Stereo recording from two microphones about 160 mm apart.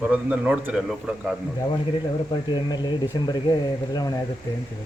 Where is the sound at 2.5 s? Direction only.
25° left (ahead or behind).